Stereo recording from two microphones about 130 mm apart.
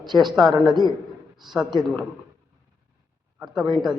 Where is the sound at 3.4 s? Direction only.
5° right (ahead or behind).